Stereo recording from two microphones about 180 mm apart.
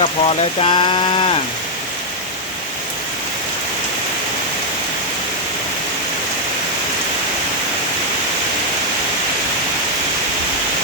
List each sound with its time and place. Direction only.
0.0 s rain: 30° left (ahead or behind)